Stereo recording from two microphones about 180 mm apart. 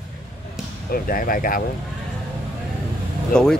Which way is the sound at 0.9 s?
55° left (ahead or behind).